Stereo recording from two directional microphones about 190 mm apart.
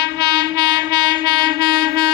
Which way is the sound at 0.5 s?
20° right (ahead or behind).